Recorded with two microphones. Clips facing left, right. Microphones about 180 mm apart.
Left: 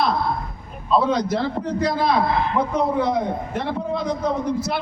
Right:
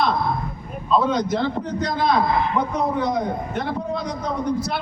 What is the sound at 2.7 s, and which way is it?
Speech, 30° left (ahead or behind).